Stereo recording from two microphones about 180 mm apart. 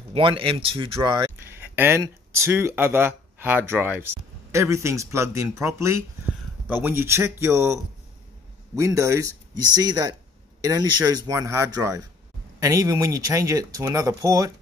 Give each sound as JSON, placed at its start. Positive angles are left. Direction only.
{"t": 0.1, "sound": "speech", "side_deg": -30}
{"t": 1.6, "sound": "speech", "side_deg": -15}